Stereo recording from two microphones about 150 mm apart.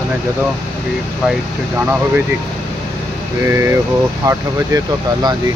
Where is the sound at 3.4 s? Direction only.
15° right (ahead or behind).